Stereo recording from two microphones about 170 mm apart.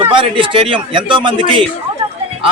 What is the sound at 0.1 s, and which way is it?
A man's voice, 30° right (ahead or behind).